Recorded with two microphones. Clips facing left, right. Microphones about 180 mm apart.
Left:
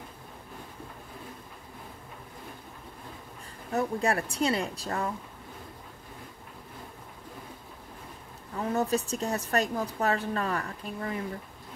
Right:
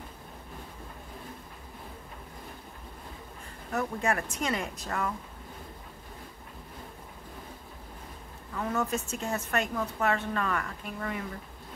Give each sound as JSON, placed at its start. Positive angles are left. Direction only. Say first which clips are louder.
{"t": 3.7, "sound": "a woman's voice", "louder": "left 2 dB", "side_deg": 35}
{"t": 8.5, "sound": "a woman's voice", "louder": "left 3 dB", "side_deg": 35}